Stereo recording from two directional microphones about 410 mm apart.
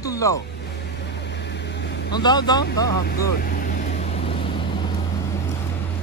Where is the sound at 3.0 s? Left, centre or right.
Left.